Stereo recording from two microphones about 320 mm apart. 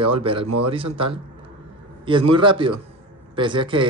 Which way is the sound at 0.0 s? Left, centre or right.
Centre.